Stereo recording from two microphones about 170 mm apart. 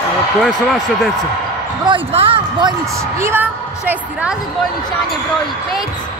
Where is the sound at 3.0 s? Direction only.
15° right (ahead or behind).